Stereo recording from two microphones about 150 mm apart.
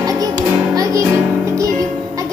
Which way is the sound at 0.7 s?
20° right (ahead or behind).